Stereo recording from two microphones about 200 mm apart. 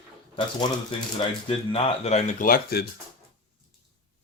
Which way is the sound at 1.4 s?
30° left (ahead or behind).